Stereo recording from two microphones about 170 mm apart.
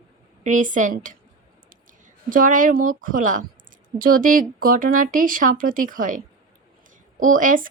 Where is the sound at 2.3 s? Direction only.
50° right (ahead or behind).